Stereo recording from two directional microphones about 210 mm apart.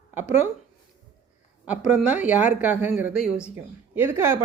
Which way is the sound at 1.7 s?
5° right (ahead or behind).